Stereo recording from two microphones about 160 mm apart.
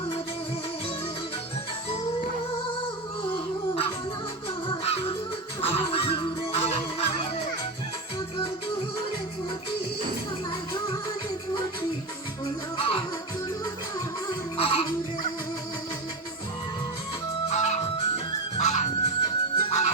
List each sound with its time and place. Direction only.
3.3 s a sound: 35° left (ahead or behind)
4.7 s music: 40° left (ahead or behind)
12.7 s music: 35° left (ahead or behind)
14.3 s music: 35° left (ahead or behind)
17.5 s music: 45° left (ahead or behind)
19.2 s music: 35° left (ahead or behind)